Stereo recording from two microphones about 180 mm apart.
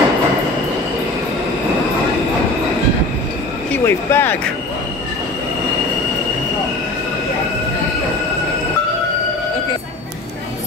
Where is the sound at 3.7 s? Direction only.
15° left (ahead or behind).